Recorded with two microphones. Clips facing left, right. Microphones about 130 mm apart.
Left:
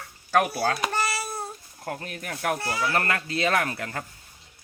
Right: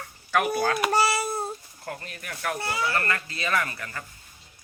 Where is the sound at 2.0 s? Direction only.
55° left (ahead or behind).